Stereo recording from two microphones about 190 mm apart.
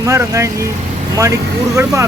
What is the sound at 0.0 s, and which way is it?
Speech, 15° right (ahead or behind).